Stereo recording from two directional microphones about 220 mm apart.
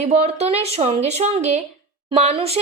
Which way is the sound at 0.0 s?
30° right (ahead or behind).